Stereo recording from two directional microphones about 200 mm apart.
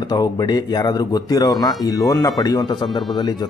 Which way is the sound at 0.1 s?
20° left (ahead or behind).